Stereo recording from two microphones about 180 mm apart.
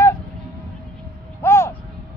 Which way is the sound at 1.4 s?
15° left (ahead or behind).